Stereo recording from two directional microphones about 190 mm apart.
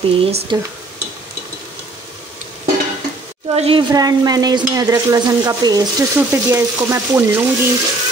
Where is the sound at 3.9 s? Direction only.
20° right (ahead or behind).